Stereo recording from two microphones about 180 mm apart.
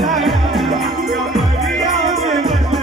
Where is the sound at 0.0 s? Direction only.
Centre (ahead or behind).